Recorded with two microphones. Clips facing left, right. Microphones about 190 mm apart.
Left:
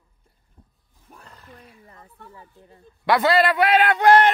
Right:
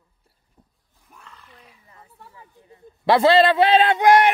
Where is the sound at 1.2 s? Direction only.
45° left (ahead or behind).